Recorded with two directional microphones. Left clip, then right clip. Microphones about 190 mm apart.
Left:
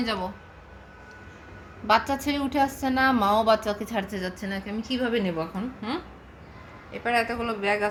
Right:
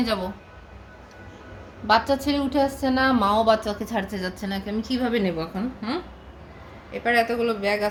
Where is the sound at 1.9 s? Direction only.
5° left (ahead or behind).